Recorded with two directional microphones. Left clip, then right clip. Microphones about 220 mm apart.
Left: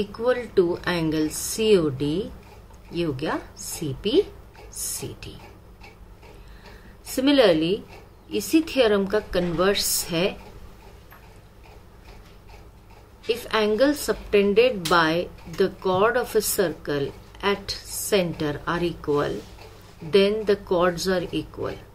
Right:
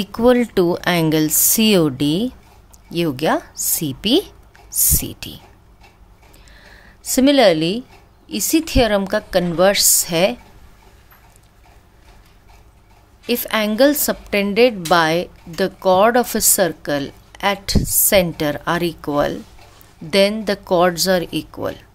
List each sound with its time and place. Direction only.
0.0 s speech: 55° right (ahead or behind)
7.2 s a woman's voice: 55° right (ahead or behind)
13.3 s a woman's voice: 55° right (ahead or behind)